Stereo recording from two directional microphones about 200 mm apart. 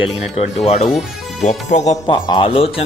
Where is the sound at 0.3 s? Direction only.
30° left (ahead or behind).